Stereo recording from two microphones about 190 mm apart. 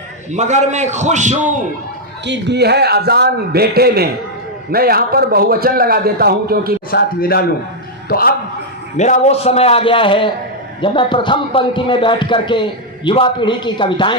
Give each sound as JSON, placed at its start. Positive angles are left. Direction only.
{"t": 0.3, "sound": "a man's voice", "side_deg": -40}
{"t": 2.2, "sound": "a man's voice", "side_deg": -65}
{"t": 6.9, "sound": "a man's voice", "side_deg": 55}
{"t": 9.0, "sound": "a man's voice", "side_deg": 40}